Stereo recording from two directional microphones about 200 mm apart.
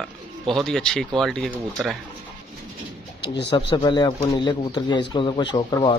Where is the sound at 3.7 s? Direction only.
20° left (ahead or behind).